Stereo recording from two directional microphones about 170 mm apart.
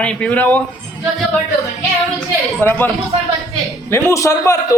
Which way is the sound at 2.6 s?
10° left (ahead or behind).